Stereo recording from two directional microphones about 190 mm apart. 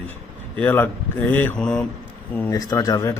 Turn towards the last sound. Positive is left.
turn(degrees=20)  # may be behind; listen again after turning